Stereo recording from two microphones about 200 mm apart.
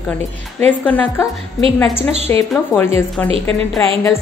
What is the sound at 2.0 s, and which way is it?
Speech, 30° right (ahead or behind).